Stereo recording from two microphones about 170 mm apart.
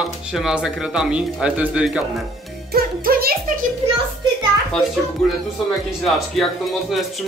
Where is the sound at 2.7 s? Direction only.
60° right (ahead or behind).